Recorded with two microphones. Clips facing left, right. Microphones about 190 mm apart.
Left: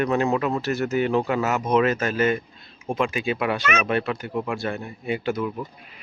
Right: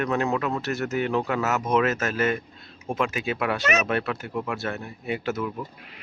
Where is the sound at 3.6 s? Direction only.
40° right (ahead or behind).